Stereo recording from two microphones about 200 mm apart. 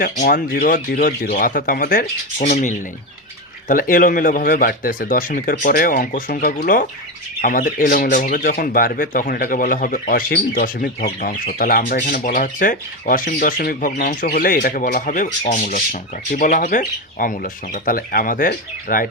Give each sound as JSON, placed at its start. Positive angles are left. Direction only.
{"t": 0.0, "sound": "speech", "side_deg": 45}